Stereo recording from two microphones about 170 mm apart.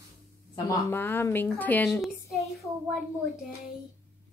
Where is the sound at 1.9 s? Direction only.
Centre (ahead or behind).